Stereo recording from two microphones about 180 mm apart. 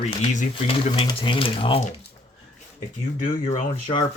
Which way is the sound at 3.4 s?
40° left (ahead or behind).